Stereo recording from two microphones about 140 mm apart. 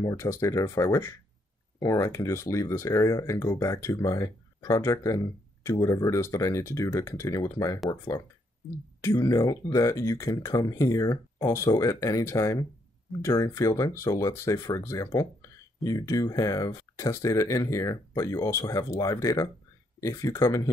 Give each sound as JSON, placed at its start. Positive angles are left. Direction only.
{"t": 0.0, "sound": "speech", "side_deg": 20}